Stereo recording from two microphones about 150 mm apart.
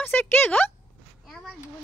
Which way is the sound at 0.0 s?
15° left (ahead or behind).